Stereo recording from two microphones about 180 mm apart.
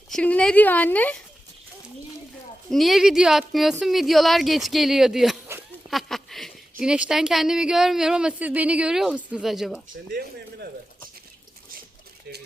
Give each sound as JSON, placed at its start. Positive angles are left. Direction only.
{"t": 0.1, "sound": "a woman's voice", "side_deg": 5}
{"t": 2.6, "sound": "speech", "side_deg": 0}
{"t": 10.1, "sound": "speech", "side_deg": -60}